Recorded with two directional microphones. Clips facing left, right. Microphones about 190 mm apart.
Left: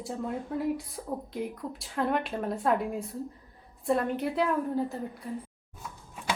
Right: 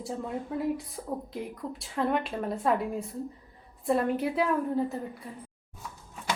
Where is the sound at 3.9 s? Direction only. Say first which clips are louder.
Right 1 dB; centre (ahead or behind).